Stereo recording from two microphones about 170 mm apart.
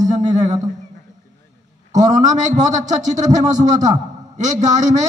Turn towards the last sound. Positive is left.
turn(degrees=-45)  # may be behind; listen again after turning